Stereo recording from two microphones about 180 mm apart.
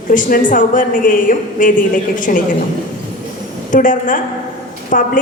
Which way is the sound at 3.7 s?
45° left (ahead or behind).